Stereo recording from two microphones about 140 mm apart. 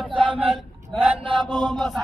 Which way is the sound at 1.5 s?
10° left (ahead or behind).